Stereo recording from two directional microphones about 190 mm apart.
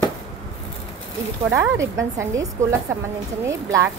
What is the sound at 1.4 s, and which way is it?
Speech, 15° right (ahead or behind).